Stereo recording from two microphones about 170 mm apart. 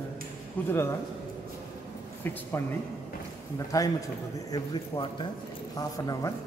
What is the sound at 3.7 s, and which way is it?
A man's voice, 20° left (ahead or behind).